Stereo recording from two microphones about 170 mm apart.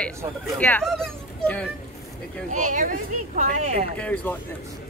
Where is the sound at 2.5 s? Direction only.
50° right (ahead or behind).